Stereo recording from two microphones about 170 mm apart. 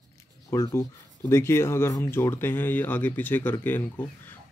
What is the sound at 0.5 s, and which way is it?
Speech, 15° left (ahead or behind).